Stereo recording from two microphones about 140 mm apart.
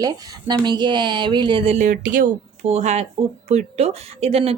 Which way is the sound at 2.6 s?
50° right (ahead or behind).